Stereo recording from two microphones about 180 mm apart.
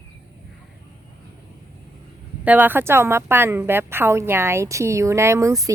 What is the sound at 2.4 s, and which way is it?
A woman's voice, 10° right (ahead or behind).